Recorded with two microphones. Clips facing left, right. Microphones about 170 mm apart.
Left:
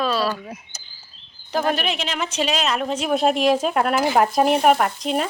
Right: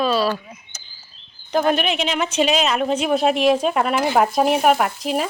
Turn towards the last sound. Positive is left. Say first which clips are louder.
# even
turn(degrees=-5)  # may be behind; listen again after turning